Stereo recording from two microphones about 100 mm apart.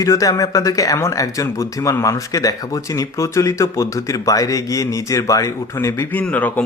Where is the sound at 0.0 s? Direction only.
35° left (ahead or behind).